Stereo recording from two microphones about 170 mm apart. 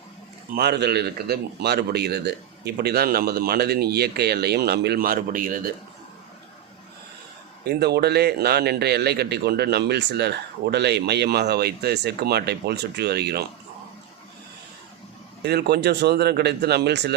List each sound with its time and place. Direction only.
0.5 s a man's voice: 70° right (ahead or behind); by 5.7 s 55° right (ahead or behind)
7.6 s a man's voice: 70° right (ahead or behind)
15.4 s a man's voice: 70° right (ahead or behind)